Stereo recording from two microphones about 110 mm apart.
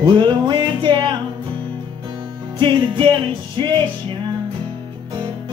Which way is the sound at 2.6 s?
50° right (ahead or behind).